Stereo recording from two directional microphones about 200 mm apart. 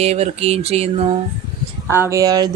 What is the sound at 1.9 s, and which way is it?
Speech, 15° right (ahead or behind).